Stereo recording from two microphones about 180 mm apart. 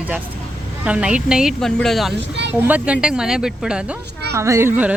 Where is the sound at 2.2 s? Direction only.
75° right (ahead or behind).